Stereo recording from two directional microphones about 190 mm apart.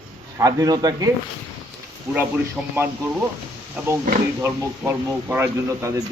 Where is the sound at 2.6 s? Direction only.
5° right (ahead or behind).